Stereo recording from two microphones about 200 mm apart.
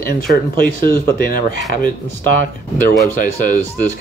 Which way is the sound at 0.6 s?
45° left (ahead or behind).